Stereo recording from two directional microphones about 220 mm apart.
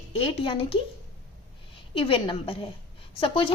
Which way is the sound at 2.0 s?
25° left (ahead or behind).